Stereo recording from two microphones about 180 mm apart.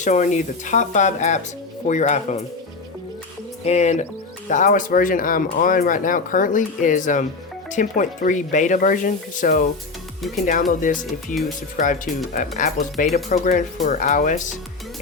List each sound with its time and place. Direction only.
0.0 s speech: 40° left (ahead or behind)
3.7 s speech: 40° left (ahead or behind)